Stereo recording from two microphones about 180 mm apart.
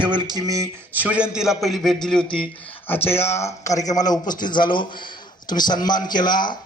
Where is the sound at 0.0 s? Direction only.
25° right (ahead or behind); by 6.0 s 25° left (ahead or behind).